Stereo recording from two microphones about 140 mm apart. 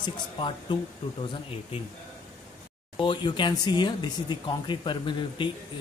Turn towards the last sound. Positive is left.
turn(degrees=35)  # may be behind; listen again after turning